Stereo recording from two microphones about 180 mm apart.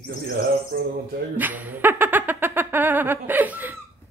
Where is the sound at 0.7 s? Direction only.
55° right (ahead or behind).